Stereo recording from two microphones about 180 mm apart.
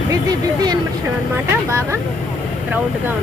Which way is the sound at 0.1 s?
20° right (ahead or behind).